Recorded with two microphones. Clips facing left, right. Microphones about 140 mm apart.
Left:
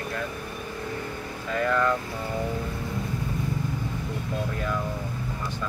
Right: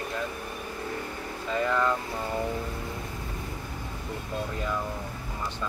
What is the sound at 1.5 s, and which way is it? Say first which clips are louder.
Speech: left 2 dB; 20° right (ahead or behind).